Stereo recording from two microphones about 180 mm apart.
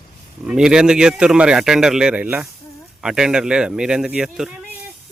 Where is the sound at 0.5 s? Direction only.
5° right (ahead or behind).